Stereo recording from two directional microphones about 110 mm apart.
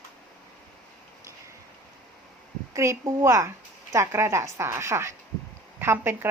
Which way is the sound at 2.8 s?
25° right (ahead or behind).